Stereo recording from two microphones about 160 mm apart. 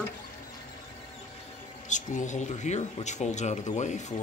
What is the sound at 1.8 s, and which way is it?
Speech, 50° left (ahead or behind).